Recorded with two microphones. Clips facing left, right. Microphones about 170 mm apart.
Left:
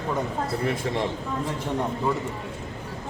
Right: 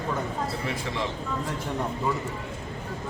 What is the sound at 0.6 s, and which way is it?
Speech, 50° left (ahead or behind).